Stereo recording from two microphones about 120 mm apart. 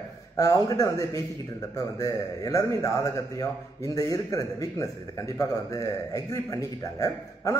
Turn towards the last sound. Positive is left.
turn(degrees=25)  # may be behind; listen again after turning